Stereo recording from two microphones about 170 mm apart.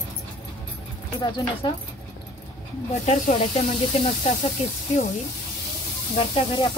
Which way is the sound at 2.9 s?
45° left (ahead or behind).